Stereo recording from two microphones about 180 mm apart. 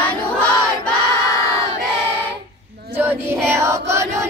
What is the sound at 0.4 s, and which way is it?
Choir, 5° left (ahead or behind).